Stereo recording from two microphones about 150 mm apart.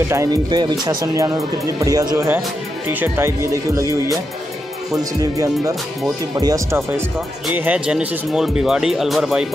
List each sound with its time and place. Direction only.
0.1 s speech: 20° right (ahead or behind)
5.2 s speech: 20° right (ahead or behind)
7.5 s speech: 10° right (ahead or behind)